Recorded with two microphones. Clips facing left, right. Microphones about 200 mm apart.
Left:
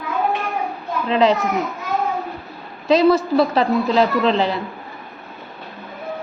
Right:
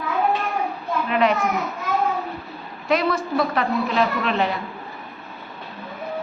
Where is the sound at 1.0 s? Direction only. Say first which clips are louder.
Left 4 dB; 25° left (ahead or behind).